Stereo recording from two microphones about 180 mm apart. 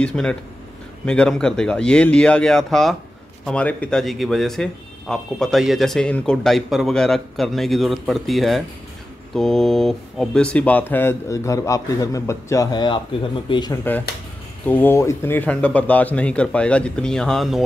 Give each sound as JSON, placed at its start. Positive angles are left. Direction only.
{"t": 0.0, "sound": "speech", "side_deg": 5}
{"t": 14.7, "sound": "speech", "side_deg": 10}